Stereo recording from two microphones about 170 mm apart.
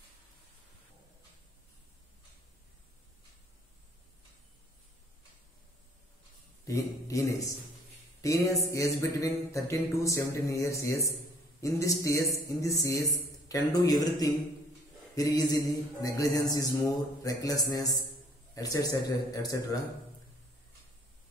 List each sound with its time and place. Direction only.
6.6 s a man's voice: 20° left (ahead or behind)
8.2 s a sound: 20° left (ahead or behind)
11.6 s a man's voice: 20° left (ahead or behind)